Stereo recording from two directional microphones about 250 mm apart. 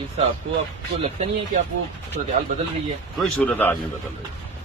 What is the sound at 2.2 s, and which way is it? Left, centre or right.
Speech, right.